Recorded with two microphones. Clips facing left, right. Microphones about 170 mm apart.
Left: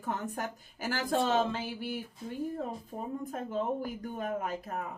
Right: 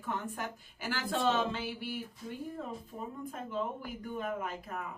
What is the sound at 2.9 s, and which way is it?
Speech, 40° left (ahead or behind).